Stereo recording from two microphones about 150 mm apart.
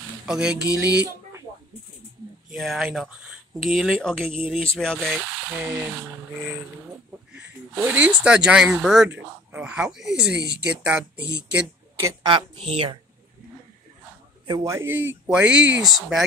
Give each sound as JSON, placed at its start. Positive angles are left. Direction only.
{"t": 0.3, "sound": "speech", "side_deg": -5}
{"t": 2.5, "sound": "speech", "side_deg": 0}
{"t": 7.7, "sound": "speech", "side_deg": -10}
{"t": 12.0, "sound": "speech", "side_deg": -25}
{"t": 12.5, "sound": "speech", "side_deg": -40}
{"t": 14.5, "sound": "speech", "side_deg": -20}